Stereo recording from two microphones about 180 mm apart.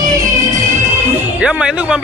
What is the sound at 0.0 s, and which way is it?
Music, 20° right (ahead or behind).